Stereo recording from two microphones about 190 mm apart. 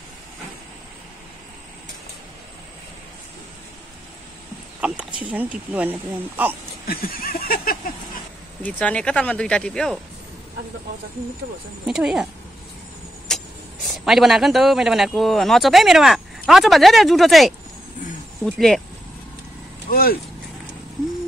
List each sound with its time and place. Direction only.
4.7 s speech: 10° right (ahead or behind)
6.9 s a sound: 50° left (ahead or behind)
8.6 s speech: 5° left (ahead or behind)
11.8 s speech: 5° right (ahead or behind)
13.3 s vehicle: 5° left (ahead or behind)
13.8 s speech: centre (ahead or behind)
19.9 s vehicle: 50° left (ahead or behind)